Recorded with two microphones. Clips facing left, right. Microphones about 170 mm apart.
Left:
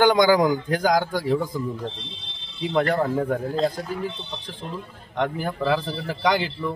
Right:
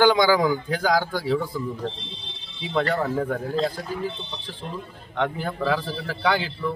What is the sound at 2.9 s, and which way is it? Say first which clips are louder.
Speech: left 2 dB; 10° left (ahead or behind).